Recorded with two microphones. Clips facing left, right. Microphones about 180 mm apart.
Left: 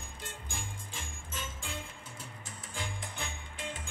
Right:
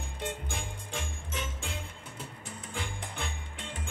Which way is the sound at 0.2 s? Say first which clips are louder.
Right 8 dB; 65° right (ahead or behind).